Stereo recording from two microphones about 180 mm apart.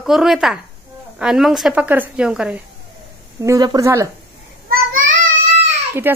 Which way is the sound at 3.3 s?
20° right (ahead or behind).